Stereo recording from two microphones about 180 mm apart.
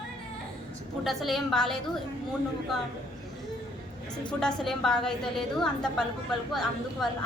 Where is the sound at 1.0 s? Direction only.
Centre (ahead or behind).